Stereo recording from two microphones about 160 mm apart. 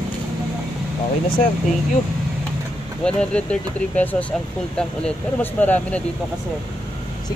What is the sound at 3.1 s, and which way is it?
Speech, 5° left (ahead or behind).